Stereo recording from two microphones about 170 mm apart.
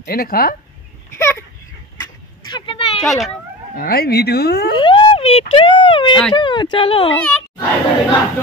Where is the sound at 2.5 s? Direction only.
30° left (ahead or behind).